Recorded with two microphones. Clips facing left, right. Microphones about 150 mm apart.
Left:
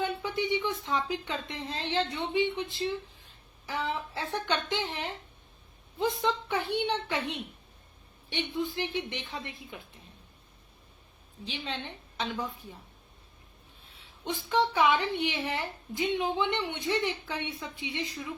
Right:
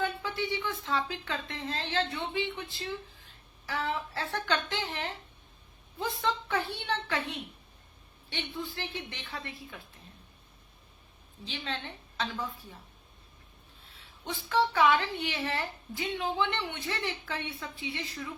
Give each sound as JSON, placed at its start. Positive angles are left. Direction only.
{"t": 0.0, "sound": "a woman's voice", "side_deg": 20}
{"t": 11.4, "sound": "a woman's voice", "side_deg": 15}
{"t": 14.3, "sound": "a woman's voice", "side_deg": 15}